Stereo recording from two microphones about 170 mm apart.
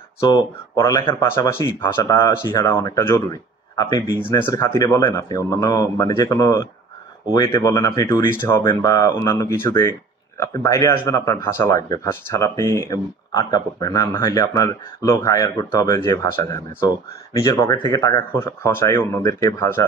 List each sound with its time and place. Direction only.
0.2 s speech: 25° left (ahead or behind)